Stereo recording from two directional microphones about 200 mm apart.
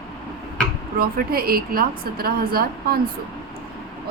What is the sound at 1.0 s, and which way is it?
A woman's voice, 50° right (ahead or behind).